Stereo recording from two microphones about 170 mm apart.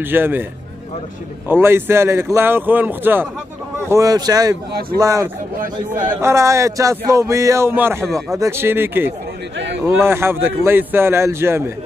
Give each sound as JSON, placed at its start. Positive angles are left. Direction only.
{"t": 0.0, "sound": "a man's voice", "side_deg": -10}
{"t": 1.5, "sound": "a man's voice", "side_deg": -15}
{"t": 8.0, "sound": "speech", "side_deg": 0}
{"t": 8.4, "sound": "a man's voice", "side_deg": -15}